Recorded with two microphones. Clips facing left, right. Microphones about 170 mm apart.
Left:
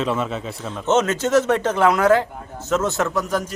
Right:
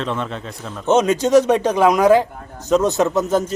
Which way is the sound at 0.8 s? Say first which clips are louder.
Right 3 dB; 15° right (ahead or behind).